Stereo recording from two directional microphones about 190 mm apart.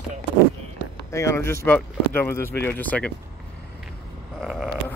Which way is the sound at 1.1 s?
15° left (ahead or behind).